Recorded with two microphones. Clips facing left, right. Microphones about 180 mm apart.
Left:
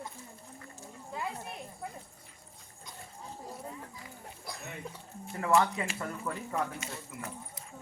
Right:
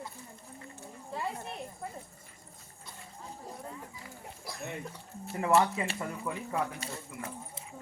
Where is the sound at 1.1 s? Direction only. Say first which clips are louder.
Right 1 dB; centre (ahead or behind).